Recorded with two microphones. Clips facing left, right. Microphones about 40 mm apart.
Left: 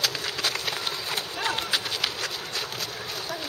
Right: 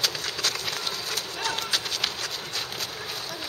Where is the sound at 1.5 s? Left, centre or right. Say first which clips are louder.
Left 1 dB; centre.